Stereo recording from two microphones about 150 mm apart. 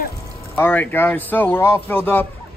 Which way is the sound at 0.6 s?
15° left (ahead or behind).